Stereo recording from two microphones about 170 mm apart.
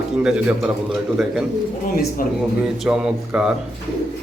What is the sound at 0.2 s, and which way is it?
A man's voice, 5° right (ahead or behind).